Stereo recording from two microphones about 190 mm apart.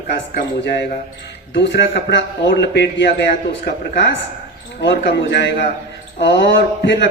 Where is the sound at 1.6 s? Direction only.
65° left (ahead or behind).